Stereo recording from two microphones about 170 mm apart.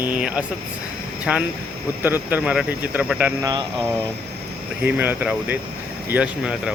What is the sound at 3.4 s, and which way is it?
Speech, 20° right (ahead or behind).